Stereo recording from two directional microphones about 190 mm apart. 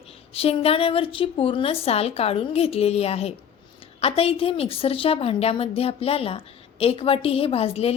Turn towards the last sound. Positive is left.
turn(degrees=30)  # may be behind; listen again after turning